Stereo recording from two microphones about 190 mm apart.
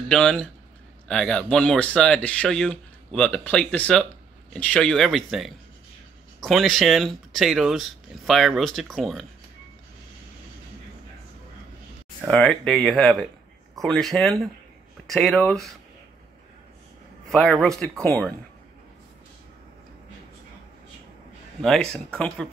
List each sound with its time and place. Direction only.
0.1 s speech: 5° left (ahead or behind)
12.3 s speech: 5° left (ahead or behind)
17.3 s speech: centre (ahead or behind)
21.5 s speech: 5° left (ahead or behind)